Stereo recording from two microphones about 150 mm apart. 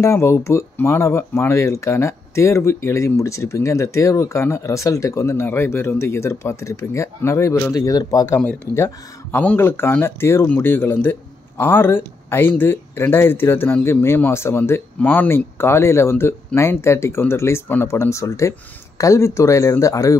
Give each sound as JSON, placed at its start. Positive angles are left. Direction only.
{"t": 0.0, "sound": "speech", "side_deg": 20}
{"t": 8.4, "sound": "speech", "side_deg": 15}